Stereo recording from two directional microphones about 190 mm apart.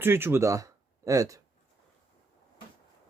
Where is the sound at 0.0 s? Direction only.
10° right (ahead or behind).